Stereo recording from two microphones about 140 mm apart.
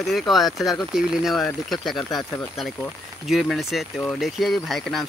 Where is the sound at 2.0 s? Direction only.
30° left (ahead or behind).